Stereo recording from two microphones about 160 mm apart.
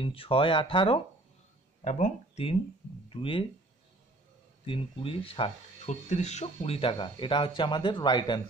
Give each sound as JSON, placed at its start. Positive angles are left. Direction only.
{"t": 0.0, "sound": "speech", "side_deg": 35}
{"t": 1.9, "sound": "speech", "side_deg": 45}
{"t": 3.1, "sound": "speech", "side_deg": 35}
{"t": 4.6, "sound": "speech", "side_deg": 35}